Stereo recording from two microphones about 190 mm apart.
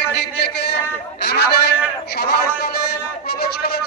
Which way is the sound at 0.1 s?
60° left (ahead or behind).